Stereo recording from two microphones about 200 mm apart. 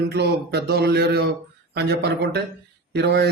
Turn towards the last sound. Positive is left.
turn(degrees=-55)  # may be behind; listen again after turning